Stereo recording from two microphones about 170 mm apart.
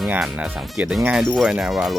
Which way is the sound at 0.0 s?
5° right (ahead or behind).